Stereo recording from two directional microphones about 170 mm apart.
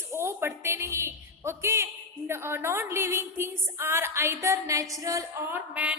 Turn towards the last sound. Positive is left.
turn(degrees=-10)  # may be behind; listen again after turning